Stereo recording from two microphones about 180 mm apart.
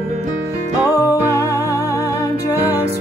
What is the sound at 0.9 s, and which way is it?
Music, 15° left (ahead or behind).